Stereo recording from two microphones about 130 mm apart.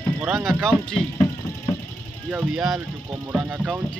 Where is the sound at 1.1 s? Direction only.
20° left (ahead or behind).